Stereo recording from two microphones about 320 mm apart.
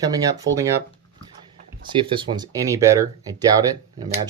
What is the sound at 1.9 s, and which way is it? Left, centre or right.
Speech, centre.